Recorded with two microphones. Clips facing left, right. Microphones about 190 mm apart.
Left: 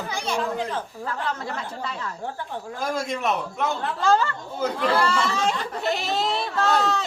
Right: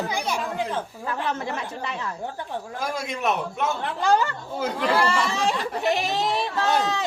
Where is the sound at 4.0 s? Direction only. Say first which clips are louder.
Even; 15° right (ahead or behind).